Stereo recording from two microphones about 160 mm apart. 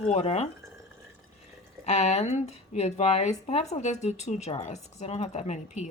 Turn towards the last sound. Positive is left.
turn(degrees=45)  # may be behind; listen again after turning